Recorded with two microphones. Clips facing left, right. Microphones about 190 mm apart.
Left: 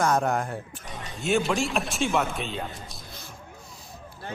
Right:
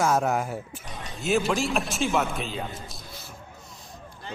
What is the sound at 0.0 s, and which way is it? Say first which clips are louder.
A man's voice: even; 5° right (ahead or behind).